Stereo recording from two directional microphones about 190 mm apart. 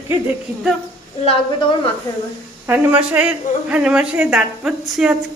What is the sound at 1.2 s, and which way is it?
Speech, 30° left (ahead or behind).